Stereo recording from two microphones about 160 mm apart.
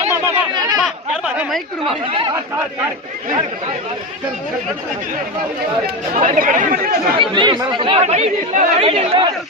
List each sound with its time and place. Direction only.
0.1 s a sound: 20° right (ahead or behind)
0.8 s chatter: 5° right (ahead or behind)
1.8 s speech: 30° right (ahead or behind)
6.1 s speech: 55° right (ahead or behind)
7.2 s speech: 30° right (ahead or behind)